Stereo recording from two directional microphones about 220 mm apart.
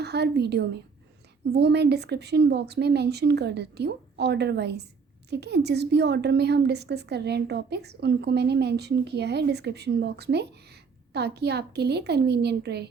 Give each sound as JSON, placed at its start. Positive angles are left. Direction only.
{"t": 0.0, "sound": "a woman's voice", "side_deg": -50}